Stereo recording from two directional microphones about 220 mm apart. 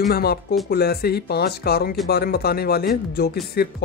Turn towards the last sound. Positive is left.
turn(degrees=45)  # may be behind; listen again after turning